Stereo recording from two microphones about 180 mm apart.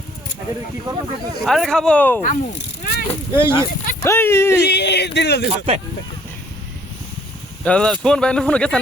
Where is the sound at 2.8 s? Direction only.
55° left (ahead or behind).